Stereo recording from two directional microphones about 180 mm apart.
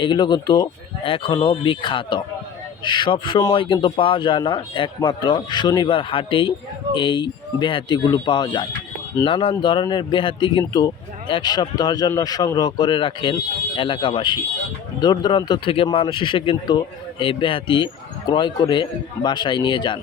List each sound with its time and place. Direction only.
0.0 s a man's voice: 25° left (ahead or behind)